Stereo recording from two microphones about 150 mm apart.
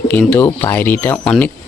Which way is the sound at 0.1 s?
10° left (ahead or behind).